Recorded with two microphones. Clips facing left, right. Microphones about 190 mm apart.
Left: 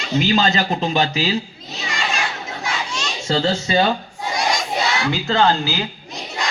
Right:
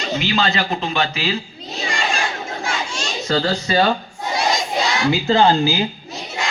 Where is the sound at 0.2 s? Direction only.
40° left (ahead or behind).